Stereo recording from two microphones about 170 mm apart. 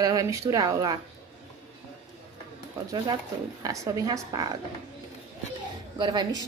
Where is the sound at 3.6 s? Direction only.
20° right (ahead or behind).